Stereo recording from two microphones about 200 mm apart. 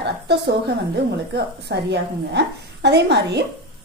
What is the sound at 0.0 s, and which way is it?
A woman's voice, 60° right (ahead or behind).